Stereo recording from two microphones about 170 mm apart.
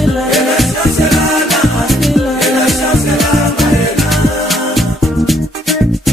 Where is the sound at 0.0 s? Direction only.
Centre (ahead or behind).